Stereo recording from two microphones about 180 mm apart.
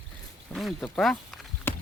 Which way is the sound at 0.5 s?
Centre (ahead or behind).